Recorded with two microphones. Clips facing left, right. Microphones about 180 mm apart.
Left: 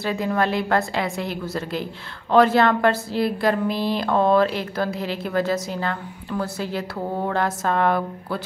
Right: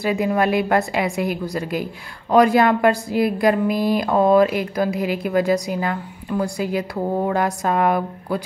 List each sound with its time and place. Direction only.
0.0 s a woman's voice: 15° right (ahead or behind)